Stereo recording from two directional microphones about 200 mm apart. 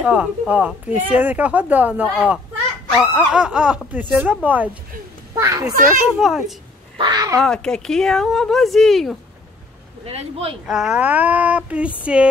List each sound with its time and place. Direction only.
0.0 s a child's voice: 5° right (ahead or behind)
6.1 s speech: centre (ahead or behind)
7.0 s speech: 20° right (ahead or behind)
7.3 s speech: 5° left (ahead or behind)
10.0 s speech: 30° right (ahead or behind)
10.7 s speech: 5° right (ahead or behind)